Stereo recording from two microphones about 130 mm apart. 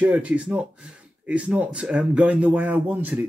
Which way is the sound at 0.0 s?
10° right (ahead or behind).